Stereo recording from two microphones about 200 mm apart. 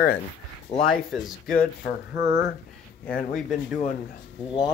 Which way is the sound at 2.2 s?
55° left (ahead or behind).